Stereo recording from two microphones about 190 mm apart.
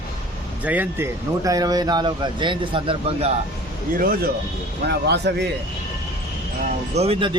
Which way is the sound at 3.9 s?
50° right (ahead or behind).